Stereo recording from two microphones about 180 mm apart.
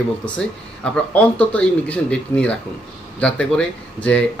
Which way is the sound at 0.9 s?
5° left (ahead or behind).